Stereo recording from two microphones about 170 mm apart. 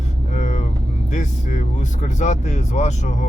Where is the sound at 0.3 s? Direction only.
45° left (ahead or behind).